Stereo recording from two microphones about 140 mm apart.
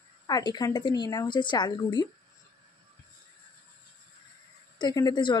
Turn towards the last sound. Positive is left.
turn(degrees=35)  # may be behind; listen again after turning